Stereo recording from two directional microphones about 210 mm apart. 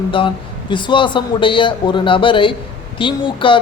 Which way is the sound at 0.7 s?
20° left (ahead or behind).